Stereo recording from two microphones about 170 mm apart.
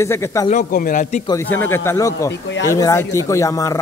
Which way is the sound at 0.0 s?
15° left (ahead or behind).